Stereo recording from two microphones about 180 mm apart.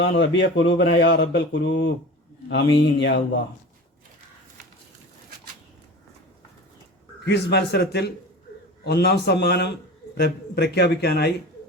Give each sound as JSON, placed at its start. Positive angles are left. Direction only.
{"t": 0.0, "sound": "speech", "side_deg": 80}
{"t": 2.5, "sound": "a man's voice", "side_deg": 75}
{"t": 7.3, "sound": "a man's voice", "side_deg": 70}